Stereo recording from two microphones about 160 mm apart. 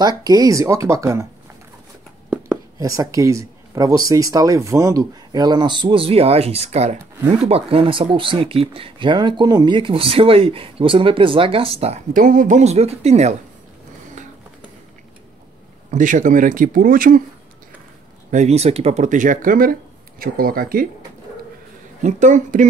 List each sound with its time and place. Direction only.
0.0 s speech: 25° right (ahead or behind)
2.2 s a sound: 5° right (ahead or behind)
2.8 s speech: 20° right (ahead or behind); by 12.0 s 40° right (ahead or behind)
12.1 s speech: 55° right (ahead or behind)
15.9 s speech: 50° right (ahead or behind)
18.3 s speech: 45° right (ahead or behind); by 20.8 s 65° right (ahead or behind)
22.0 s speech: 50° right (ahead or behind)